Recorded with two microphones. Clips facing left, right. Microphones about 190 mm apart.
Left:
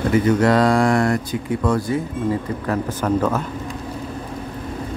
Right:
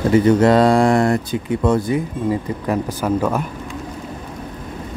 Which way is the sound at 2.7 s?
10° right (ahead or behind).